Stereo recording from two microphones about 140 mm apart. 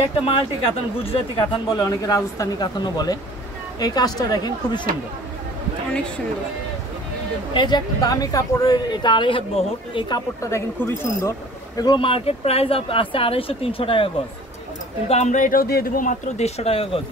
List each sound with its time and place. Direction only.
0.0 s speech: 45° left (ahead or behind)
1.7 s speech: 25° left (ahead or behind)
7.5 s speech: 30° left (ahead or behind)
15.0 s speech: 55° left (ahead or behind); by 16.2 s 80° left
16.3 s speech: 50° left (ahead or behind)